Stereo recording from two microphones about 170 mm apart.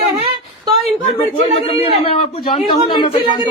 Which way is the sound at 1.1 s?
35° left (ahead or behind).